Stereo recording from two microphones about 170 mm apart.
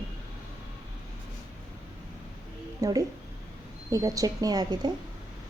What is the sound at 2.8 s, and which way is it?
Speech, 20° right (ahead or behind).